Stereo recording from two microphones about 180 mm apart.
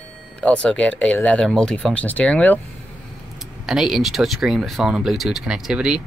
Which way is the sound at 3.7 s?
Centre (ahead or behind).